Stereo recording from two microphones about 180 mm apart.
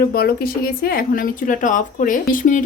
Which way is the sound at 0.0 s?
60° left (ahead or behind).